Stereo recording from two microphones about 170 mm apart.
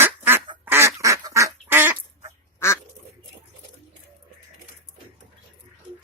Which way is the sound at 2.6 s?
15° left (ahead or behind).